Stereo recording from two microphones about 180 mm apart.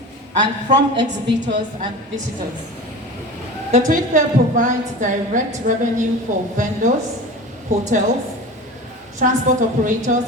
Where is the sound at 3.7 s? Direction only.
45° right (ahead or behind).